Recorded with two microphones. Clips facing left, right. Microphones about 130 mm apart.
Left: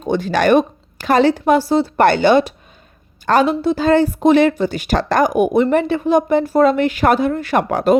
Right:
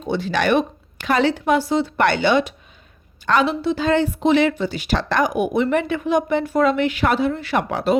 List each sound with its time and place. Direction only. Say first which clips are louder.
0.0 s a woman's voice: left 5 dB; 45° left (ahead or behind)
5.6 s a woman's voice: left 4 dB; 35° left (ahead or behind)